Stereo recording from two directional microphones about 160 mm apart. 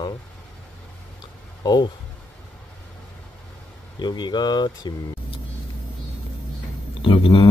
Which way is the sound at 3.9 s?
25° left (ahead or behind).